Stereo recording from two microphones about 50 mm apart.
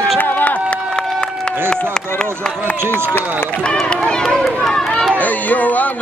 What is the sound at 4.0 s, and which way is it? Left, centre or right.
Speech, centre.